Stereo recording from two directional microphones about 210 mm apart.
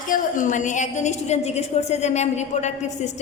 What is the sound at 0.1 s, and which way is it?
A woman's voice, 35° left (ahead or behind).